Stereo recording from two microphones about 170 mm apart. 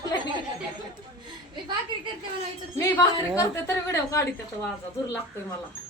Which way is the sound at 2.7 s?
15° left (ahead or behind).